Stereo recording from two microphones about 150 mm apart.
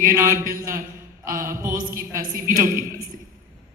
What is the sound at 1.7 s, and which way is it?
A woman's voice, 65° right (ahead or behind).